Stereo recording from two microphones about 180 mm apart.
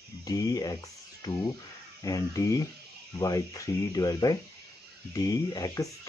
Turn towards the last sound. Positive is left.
turn(degrees=20)  # may be behind; listen again after turning